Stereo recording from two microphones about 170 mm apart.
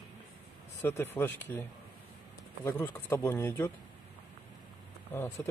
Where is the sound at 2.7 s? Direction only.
15° left (ahead or behind).